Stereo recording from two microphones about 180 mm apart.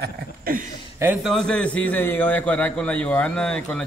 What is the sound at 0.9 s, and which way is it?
A man's voice, 10° right (ahead or behind).